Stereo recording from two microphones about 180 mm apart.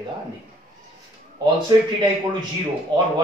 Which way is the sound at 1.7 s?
20° right (ahead or behind).